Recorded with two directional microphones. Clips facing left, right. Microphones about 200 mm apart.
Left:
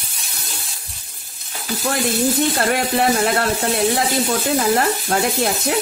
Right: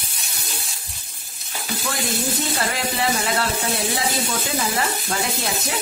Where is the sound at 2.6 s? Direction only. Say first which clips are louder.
Left 6 dB; 55° left (ahead or behind).